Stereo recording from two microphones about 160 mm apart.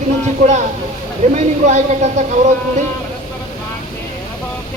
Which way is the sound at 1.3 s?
50° right (ahead or behind).